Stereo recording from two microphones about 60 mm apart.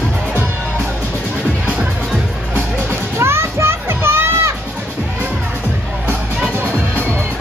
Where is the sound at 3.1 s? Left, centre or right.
Right.